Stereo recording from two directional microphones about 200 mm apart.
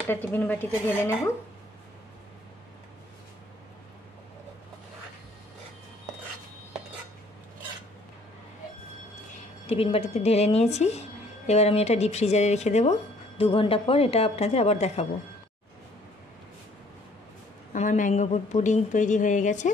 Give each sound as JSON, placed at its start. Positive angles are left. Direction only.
{"t": 0.1, "sound": "speech", "side_deg": 10}
{"t": 9.7, "sound": "a woman's voice", "side_deg": 30}
{"t": 17.7, "sound": "a woman's voice", "side_deg": 40}